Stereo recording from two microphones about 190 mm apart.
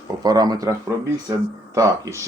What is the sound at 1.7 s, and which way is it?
Speech, 15° right (ahead or behind).